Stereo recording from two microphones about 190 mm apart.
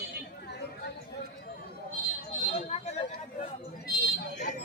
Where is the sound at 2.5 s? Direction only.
35° left (ahead or behind).